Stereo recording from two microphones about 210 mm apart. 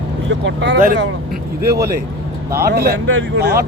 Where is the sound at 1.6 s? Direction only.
50° right (ahead or behind).